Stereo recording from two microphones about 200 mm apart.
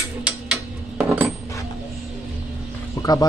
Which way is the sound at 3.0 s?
20° left (ahead or behind).